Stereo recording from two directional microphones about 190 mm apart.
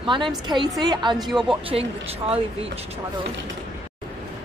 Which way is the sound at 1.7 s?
30° right (ahead or behind).